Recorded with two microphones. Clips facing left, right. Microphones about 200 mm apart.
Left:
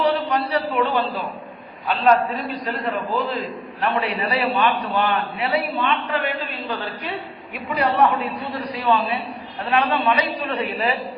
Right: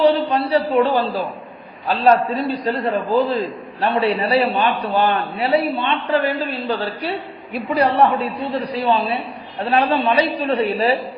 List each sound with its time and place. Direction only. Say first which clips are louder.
0.0 s a man's voice: right 5 dB; 30° right (ahead or behind)